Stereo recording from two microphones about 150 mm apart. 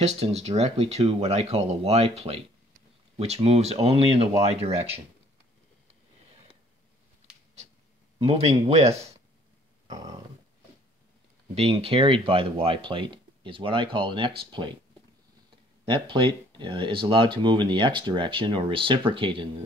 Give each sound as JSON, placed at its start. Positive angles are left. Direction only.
{"t": 0.0, "sound": "speech", "side_deg": -45}
{"t": 8.2, "sound": "speech", "side_deg": -40}
{"t": 9.8, "sound": "a sound", "side_deg": -25}
{"t": 11.5, "sound": "speech", "side_deg": -40}
{"t": 15.8, "sound": "speech", "side_deg": -35}